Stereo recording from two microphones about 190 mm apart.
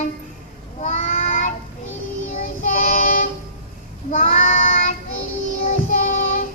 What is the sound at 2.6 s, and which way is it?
Child singing, 40° left (ahead or behind).